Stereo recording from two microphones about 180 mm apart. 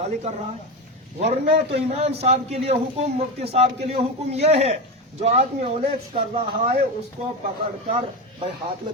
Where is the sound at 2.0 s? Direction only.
35° right (ahead or behind).